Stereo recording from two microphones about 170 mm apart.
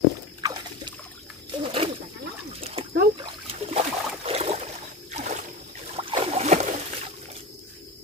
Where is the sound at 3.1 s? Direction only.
30° right (ahead or behind).